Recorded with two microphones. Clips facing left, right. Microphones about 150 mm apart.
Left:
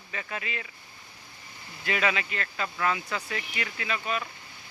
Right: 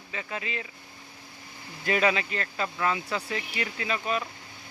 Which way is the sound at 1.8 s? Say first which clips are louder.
Right 3 dB; 35° right (ahead or behind).